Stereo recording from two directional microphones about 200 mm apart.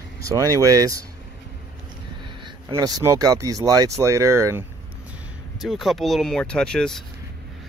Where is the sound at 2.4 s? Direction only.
20° right (ahead or behind).